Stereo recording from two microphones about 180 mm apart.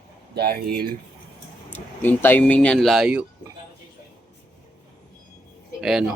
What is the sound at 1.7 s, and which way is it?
Speech, 10° left (ahead or behind).